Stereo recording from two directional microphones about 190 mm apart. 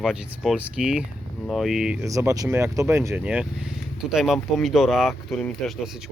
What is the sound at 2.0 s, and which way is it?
Speech, 15° right (ahead or behind).